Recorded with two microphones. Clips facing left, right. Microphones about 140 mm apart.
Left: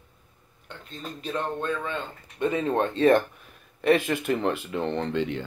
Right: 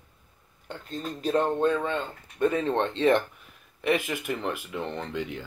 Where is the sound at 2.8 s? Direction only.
25° right (ahead or behind).